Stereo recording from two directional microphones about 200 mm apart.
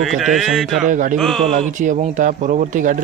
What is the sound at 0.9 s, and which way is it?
Speech, 40° right (ahead or behind).